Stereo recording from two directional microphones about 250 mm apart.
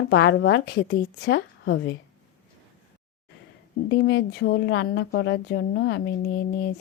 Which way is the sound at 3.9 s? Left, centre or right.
Left.